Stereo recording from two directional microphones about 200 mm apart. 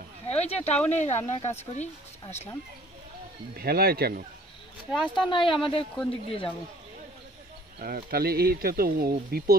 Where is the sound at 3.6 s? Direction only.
50° right (ahead or behind).